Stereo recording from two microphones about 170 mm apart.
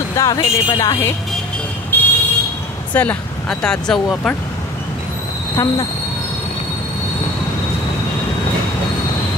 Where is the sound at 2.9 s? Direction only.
10° left (ahead or behind).